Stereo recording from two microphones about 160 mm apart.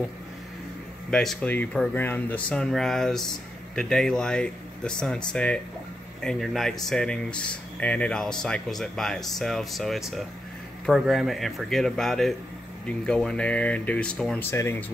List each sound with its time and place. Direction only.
1.1 s speech: centre (ahead or behind)